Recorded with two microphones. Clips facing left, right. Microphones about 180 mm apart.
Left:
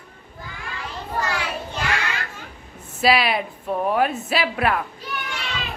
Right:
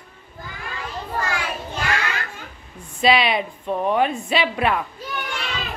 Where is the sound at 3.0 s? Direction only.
5° left (ahead or behind).